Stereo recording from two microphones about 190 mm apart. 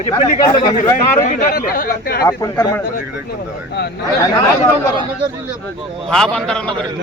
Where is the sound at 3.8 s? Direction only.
60° left (ahead or behind).